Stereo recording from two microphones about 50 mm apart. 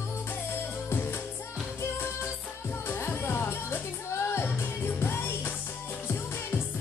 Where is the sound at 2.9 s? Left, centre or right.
Left.